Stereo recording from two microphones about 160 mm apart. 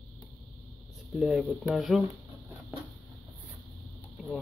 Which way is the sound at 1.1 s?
Centre (ahead or behind).